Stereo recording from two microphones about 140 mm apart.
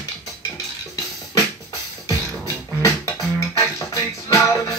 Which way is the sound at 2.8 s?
20° left (ahead or behind).